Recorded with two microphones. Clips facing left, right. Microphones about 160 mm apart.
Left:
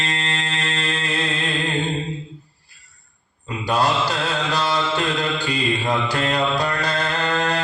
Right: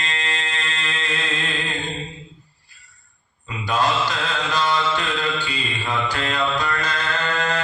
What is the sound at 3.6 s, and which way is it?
Mantra, 35° left (ahead or behind).